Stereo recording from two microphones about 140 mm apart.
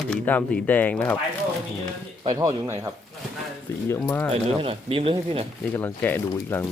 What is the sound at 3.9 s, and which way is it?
Speech, 15° left (ahead or behind).